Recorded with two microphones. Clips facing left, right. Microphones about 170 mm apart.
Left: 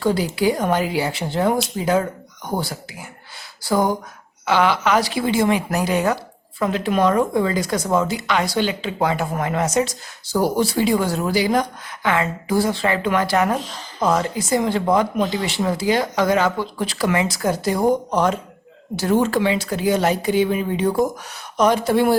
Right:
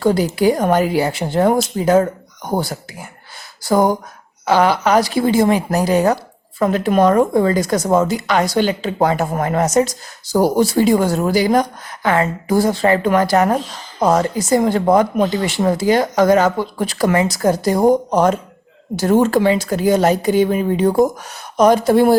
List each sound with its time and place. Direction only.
0.0 s a woman's voice: 45° right (ahead or behind)